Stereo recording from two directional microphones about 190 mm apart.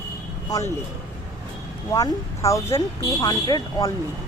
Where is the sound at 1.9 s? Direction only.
15° left (ahead or behind).